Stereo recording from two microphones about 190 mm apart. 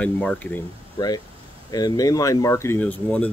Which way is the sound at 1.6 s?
20° left (ahead or behind).